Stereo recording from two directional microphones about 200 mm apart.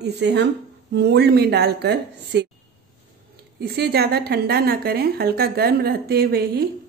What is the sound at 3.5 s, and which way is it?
A woman's voice, 55° right (ahead or behind).